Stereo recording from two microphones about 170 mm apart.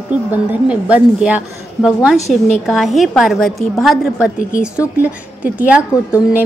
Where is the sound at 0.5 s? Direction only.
5° right (ahead or behind).